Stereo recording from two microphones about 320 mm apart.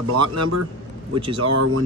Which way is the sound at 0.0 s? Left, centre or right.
Right.